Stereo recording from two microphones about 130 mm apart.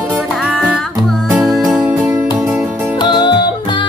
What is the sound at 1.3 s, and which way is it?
Music, centre (ahead or behind).